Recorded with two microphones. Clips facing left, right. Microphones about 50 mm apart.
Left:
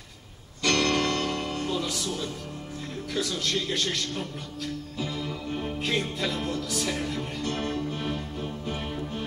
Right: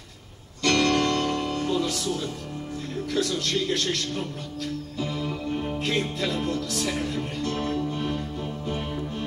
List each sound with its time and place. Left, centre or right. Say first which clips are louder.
0.6 s music: right 3 dB; centre
3.2 s speech: right 3 dB; centre
5.0 s music: right 3 dB; centre
5.6 s music: right 1 dB; centre